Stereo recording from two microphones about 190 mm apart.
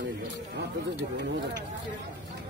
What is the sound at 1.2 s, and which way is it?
Speech, 60° right (ahead or behind).